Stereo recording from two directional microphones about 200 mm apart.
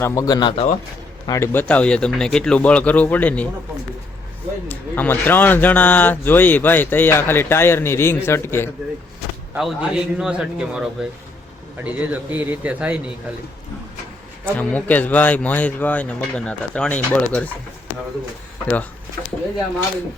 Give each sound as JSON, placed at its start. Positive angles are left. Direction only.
{"t": 0.0, "sound": "speech", "side_deg": 15}
{"t": 1.3, "sound": "speech", "side_deg": 10}
{"t": 4.7, "sound": "speech", "side_deg": 10}
{"t": 9.6, "sound": "a man's voice", "side_deg": 0}
{"t": 14.5, "sound": "speech", "side_deg": 5}